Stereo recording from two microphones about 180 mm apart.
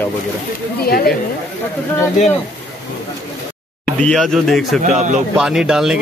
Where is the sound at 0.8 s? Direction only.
55° left (ahead or behind).